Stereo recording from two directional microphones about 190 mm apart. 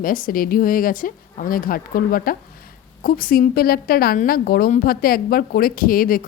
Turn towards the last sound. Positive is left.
turn(degrees=50)  # may be behind; listen again after turning